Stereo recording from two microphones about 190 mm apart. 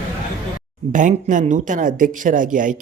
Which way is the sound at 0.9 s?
40° right (ahead or behind).